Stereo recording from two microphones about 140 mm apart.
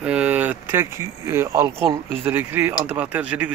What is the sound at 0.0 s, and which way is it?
Speech, 10° right (ahead or behind).